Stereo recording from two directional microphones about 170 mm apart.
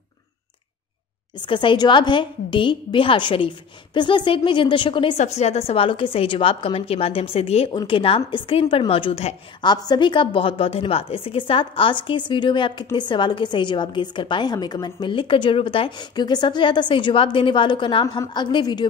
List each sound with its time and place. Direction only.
1.4 s a woman's voice: 30° left (ahead or behind)
5.1 s a woman's voice: 40° left (ahead or behind); by 18.9 s 25° left (ahead or behind)